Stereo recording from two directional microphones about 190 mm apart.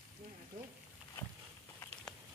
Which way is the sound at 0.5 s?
45° right (ahead or behind).